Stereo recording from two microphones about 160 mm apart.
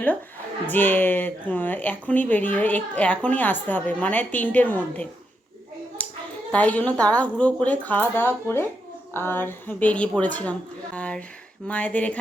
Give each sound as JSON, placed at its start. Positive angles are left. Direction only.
{"t": 0.7, "sound": "speech", "side_deg": 10}
{"t": 6.0, "sound": "a sound", "side_deg": 10}
{"t": 6.5, "sound": "speech", "side_deg": 10}